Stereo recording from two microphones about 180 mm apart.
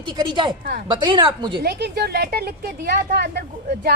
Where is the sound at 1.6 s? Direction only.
65° right (ahead or behind).